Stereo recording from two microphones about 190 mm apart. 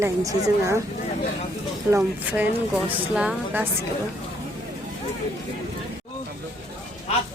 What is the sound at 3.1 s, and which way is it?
Speech, 5° right (ahead or behind).